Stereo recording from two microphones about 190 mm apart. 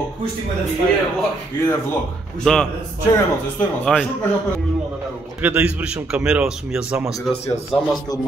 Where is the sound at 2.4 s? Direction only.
5° left (ahead or behind).